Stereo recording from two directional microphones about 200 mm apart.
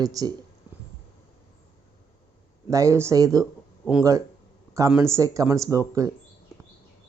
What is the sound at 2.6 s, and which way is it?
Speech, 15° right (ahead or behind).